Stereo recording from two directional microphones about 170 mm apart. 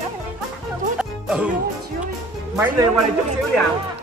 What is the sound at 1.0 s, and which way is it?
Music, 5° right (ahead or behind).